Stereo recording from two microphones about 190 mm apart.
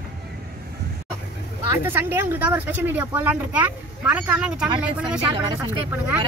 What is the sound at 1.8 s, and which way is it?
A woman's voice, 10° right (ahead or behind).